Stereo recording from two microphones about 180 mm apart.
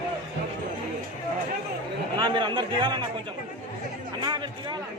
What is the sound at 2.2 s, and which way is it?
Speech, 25° right (ahead or behind).